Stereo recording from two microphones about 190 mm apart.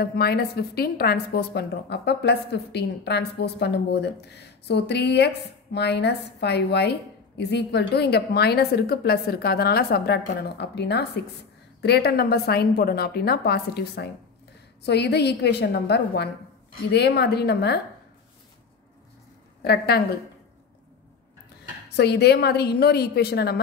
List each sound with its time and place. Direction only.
0.0 s a woman's voice: 55° left (ahead or behind)
19.6 s a woman's voice: 55° left (ahead or behind)
21.9 s a woman's voice: 60° left (ahead or behind)